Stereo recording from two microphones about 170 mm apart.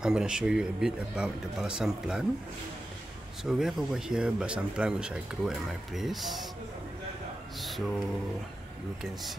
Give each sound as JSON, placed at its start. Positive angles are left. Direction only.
{"t": 0.0, "sound": "speech", "side_deg": -5}
{"t": 3.4, "sound": "speech", "side_deg": -5}
{"t": 7.6, "sound": "mantra", "side_deg": 0}